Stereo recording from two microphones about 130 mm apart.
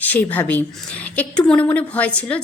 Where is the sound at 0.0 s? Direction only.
10° left (ahead or behind).